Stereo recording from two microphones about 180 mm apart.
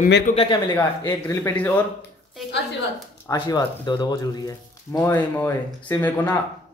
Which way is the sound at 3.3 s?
20° left (ahead or behind).